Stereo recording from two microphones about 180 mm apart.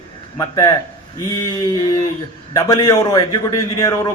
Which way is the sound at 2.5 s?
20° left (ahead or behind).